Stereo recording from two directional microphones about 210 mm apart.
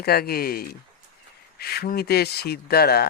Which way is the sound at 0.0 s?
45° left (ahead or behind).